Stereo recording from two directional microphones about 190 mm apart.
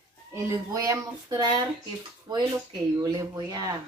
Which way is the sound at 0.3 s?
15° right (ahead or behind).